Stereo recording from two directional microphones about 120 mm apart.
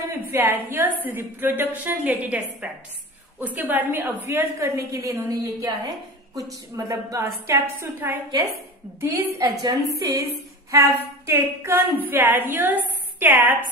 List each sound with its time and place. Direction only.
0.1 s a woman's voice: 15° right (ahead or behind)
9.3 s a woman's voice: 30° right (ahead or behind)